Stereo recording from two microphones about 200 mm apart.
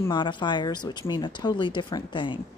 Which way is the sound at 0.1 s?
25° left (ahead or behind).